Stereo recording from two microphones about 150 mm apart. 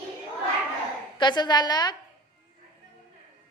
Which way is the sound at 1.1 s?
30° left (ahead or behind).